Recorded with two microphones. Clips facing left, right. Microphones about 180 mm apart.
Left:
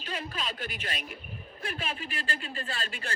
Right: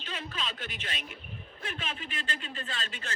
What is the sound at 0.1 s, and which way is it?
Speech, 45° left (ahead or behind).